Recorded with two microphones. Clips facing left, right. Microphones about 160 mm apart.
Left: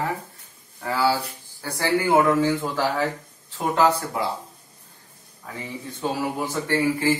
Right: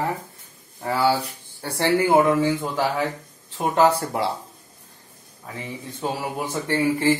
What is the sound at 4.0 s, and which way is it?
Speech, 30° right (ahead or behind).